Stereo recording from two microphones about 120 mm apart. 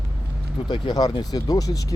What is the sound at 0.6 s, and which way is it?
Speech, 40° left (ahead or behind).